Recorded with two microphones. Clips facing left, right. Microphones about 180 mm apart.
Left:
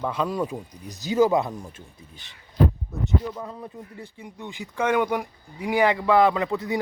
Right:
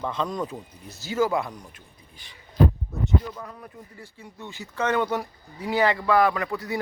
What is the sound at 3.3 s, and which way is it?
A man's voice, 20° left (ahead or behind).